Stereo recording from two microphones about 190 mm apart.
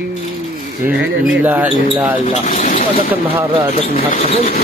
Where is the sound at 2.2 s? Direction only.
45° left (ahead or behind).